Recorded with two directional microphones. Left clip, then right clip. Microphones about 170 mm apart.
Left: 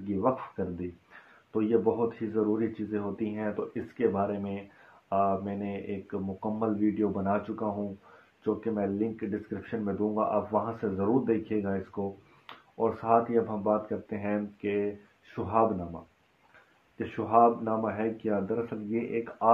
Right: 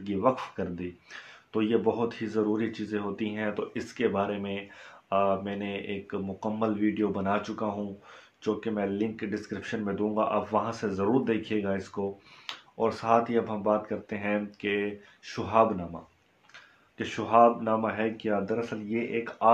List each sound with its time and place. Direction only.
0.2 s speech: 15° right (ahead or behind)
17.0 s speech: 15° right (ahead or behind)